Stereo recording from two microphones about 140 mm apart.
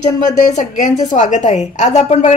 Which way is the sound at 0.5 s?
60° left (ahead or behind).